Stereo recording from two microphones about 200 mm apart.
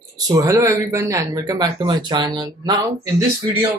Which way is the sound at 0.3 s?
15° right (ahead or behind).